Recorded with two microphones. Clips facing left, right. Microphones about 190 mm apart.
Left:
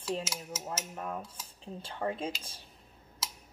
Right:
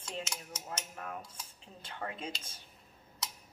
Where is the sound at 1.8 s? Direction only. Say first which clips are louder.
Left 6 dB; 30° left (ahead or behind).